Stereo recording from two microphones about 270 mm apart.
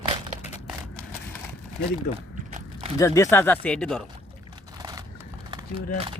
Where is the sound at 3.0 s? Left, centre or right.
Centre.